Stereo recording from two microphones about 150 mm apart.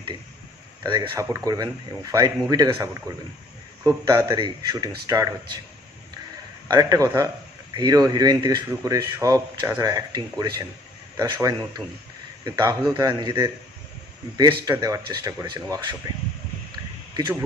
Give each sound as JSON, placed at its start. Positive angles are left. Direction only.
{"t": 0.8, "sound": "speech", "side_deg": -20}
{"t": 6.7, "sound": "speech", "side_deg": -25}